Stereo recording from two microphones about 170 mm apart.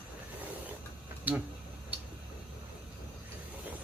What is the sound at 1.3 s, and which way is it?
Speech, 10° right (ahead or behind).